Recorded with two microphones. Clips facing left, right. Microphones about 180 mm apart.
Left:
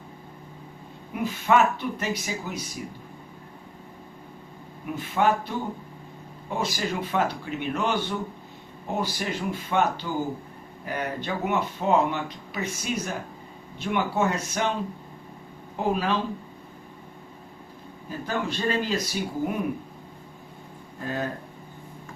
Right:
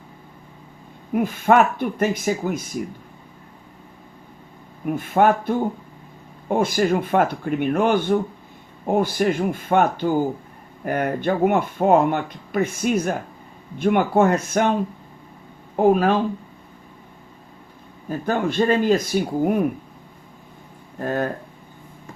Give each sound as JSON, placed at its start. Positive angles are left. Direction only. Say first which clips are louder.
{"t": 1.1, "sound": "speech", "louder": "right 6 dB", "side_deg": -50}
{"t": 4.9, "sound": "speech", "louder": "right 6 dB", "side_deg": -50}
{"t": 18.3, "sound": "speech", "louder": "right 8 dB", "side_deg": -50}
{"t": 21.0, "sound": "speech", "louder": "right 7 dB", "side_deg": -50}